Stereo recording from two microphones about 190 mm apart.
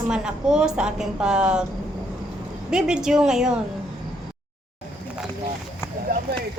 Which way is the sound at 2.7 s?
5° right (ahead or behind).